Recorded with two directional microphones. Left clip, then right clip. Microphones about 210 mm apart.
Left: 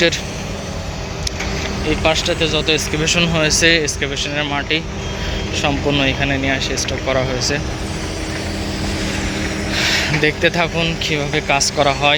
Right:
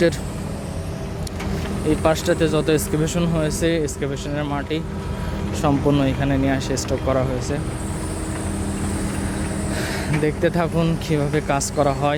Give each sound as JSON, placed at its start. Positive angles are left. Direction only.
{"t": 2.0, "sound": "speech", "side_deg": -35}
{"t": 2.9, "sound": "speech", "side_deg": -20}
{"t": 7.1, "sound": "speech", "side_deg": -15}
{"t": 9.7, "sound": "speech", "side_deg": -20}